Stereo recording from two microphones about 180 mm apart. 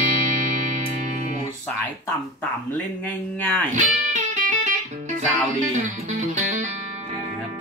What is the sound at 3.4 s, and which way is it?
Speech, 10° left (ahead or behind).